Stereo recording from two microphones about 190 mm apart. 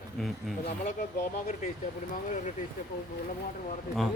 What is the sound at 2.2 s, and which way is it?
Speech, 40° left (ahead or behind).